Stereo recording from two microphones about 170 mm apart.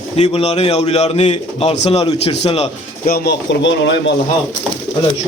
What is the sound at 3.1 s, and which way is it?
Speech, 85° left.